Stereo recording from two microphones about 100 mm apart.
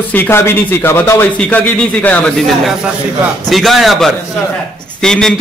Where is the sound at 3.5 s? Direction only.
Centre (ahead or behind).